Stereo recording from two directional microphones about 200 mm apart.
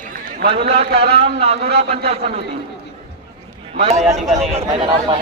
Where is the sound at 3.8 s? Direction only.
35° right (ahead or behind).